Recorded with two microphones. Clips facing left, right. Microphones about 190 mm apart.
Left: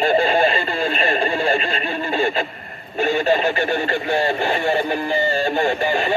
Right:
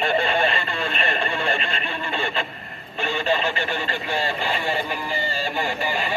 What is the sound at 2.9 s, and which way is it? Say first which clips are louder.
Speech: left 6 dB; 45° left (ahead or behind).